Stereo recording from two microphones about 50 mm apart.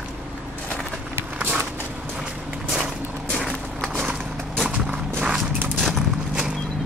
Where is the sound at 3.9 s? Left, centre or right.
Right.